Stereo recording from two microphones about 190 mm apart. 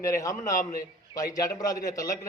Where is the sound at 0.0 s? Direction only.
15° left (ahead or behind).